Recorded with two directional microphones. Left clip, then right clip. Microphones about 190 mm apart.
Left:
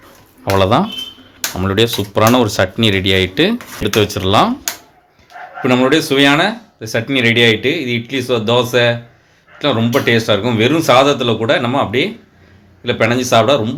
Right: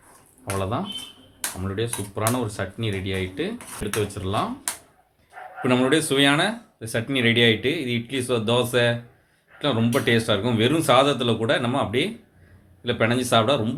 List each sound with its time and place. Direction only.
0.5 s speech: 45° left (ahead or behind)
5.6 s speech: 5° left (ahead or behind)